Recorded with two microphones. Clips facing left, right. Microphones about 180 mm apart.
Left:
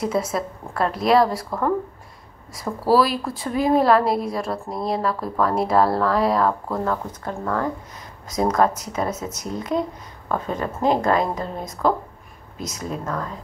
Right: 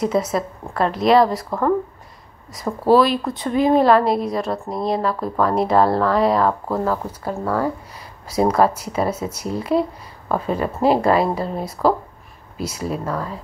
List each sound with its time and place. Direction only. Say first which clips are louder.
0.0 s speech: right 3 dB; centre (ahead or behind)
2.9 s speech: right 3 dB; 5° left (ahead or behind)